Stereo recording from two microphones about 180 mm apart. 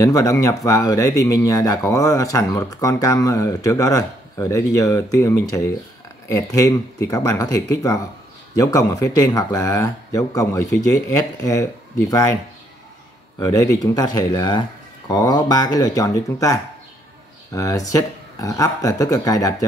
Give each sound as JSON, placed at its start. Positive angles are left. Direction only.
{"t": 0.0, "sound": "speech", "side_deg": 15}
{"t": 13.4, "sound": "speech", "side_deg": 20}